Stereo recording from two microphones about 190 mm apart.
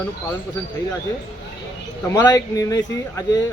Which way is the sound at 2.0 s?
20° left (ahead or behind).